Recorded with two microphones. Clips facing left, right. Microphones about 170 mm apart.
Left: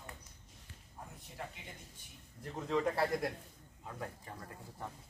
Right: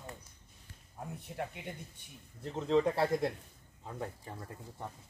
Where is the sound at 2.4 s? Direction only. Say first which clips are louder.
Right 5 dB; 25° right (ahead or behind).